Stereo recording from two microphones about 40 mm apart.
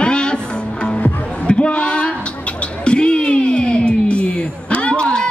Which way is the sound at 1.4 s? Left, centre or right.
Left.